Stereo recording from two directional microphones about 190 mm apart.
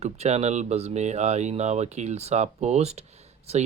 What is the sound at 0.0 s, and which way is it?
Speech, 35° right (ahead or behind).